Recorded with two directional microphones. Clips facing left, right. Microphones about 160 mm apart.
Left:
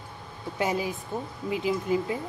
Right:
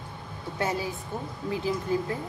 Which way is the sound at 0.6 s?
15° left (ahead or behind).